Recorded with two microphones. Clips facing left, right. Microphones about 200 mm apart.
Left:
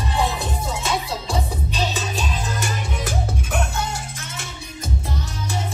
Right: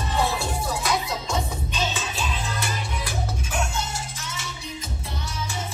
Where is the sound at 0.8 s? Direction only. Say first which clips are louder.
Left 2 dB; 35° left (ahead or behind).